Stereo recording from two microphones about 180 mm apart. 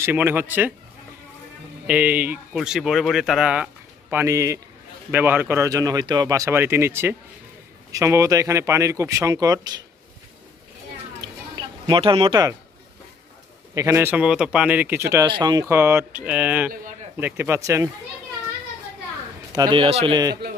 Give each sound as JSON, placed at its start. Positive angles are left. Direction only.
{"t": 0.0, "sound": "speech", "side_deg": -10}
{"t": 1.9, "sound": "speech", "side_deg": -10}
{"t": 11.1, "sound": "a sound", "side_deg": -25}
{"t": 13.7, "sound": "speech", "side_deg": -15}
{"t": 15.2, "sound": "speech", "side_deg": -25}
{"t": 19.5, "sound": "a man's voice", "side_deg": -25}